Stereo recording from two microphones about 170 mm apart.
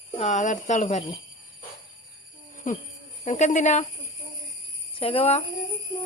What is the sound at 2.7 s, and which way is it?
Speech, 50° left (ahead or behind).